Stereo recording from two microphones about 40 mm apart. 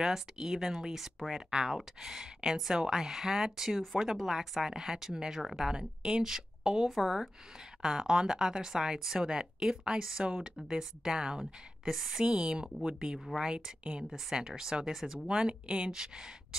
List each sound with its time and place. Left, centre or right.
0.0 s speech: centre
1.5 s speech: centre
12.3 s speech: right